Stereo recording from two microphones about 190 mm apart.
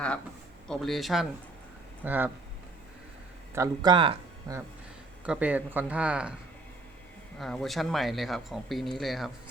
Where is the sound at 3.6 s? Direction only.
25° right (ahead or behind).